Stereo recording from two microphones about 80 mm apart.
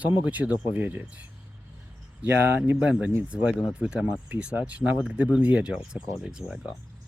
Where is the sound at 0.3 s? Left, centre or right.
Right.